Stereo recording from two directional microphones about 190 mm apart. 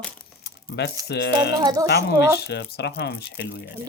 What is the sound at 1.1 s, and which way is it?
Speech, 65° left (ahead or behind).